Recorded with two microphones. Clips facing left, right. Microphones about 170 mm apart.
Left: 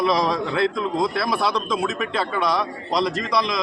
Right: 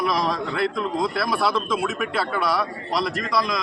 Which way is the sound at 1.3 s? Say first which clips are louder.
Even; 20° left (ahead or behind).